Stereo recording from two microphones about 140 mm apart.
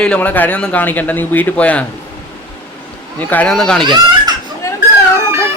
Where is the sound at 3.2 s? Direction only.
10° left (ahead or behind).